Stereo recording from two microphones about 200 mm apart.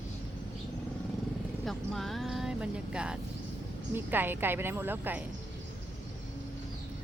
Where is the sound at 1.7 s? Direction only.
Centre (ahead or behind).